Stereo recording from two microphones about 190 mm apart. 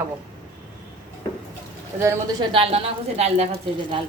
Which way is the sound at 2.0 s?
25° right (ahead or behind).